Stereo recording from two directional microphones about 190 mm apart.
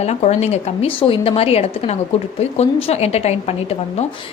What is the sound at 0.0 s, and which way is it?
A woman's voice, 35° left (ahead or behind).